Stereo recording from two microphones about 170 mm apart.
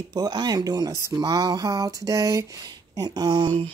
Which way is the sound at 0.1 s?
25° right (ahead or behind).